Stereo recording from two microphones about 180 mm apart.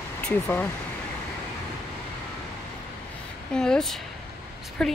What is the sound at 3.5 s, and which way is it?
Speech, 5° left (ahead or behind).